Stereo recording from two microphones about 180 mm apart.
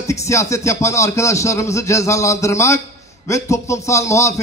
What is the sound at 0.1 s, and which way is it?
A man's voice, 15° left (ahead or behind).